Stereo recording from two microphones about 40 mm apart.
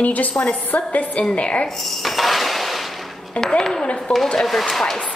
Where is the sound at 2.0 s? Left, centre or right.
Centre.